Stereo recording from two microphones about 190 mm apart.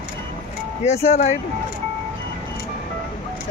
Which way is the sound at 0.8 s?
35° left (ahead or behind).